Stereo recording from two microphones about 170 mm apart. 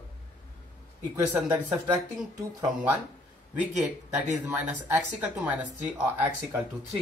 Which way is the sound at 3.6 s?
10° right (ahead or behind).